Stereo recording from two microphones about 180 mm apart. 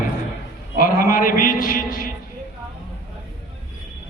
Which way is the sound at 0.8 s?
50° left (ahead or behind).